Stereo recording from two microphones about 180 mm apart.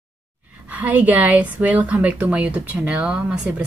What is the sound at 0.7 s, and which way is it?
A woman's voice, 10° right (ahead or behind).